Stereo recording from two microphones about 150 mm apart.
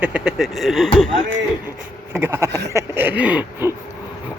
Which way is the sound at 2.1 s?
15° right (ahead or behind).